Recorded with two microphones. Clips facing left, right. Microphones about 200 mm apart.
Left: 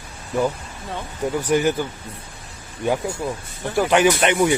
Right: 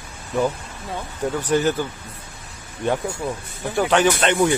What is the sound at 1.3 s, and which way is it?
Speech, 10° left (ahead or behind).